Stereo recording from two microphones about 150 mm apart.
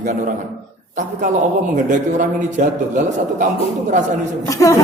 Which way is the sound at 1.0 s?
55° right (ahead or behind).